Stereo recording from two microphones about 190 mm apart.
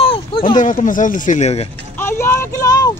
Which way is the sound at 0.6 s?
45° left (ahead or behind).